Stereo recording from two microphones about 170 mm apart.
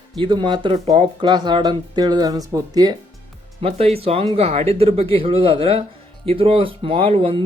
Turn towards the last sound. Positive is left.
turn(degrees=-35)  # may be behind; listen again after turning